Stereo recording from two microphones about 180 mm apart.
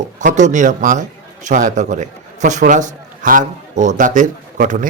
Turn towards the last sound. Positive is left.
turn(degrees=-45)  # may be behind; listen again after turning